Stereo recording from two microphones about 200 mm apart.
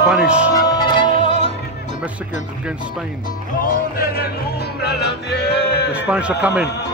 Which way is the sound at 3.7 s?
50° left (ahead or behind).